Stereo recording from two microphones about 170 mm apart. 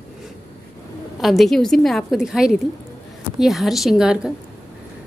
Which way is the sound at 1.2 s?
Centre (ahead or behind).